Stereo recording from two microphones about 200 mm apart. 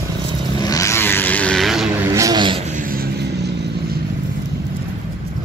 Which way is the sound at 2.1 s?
15° right (ahead or behind).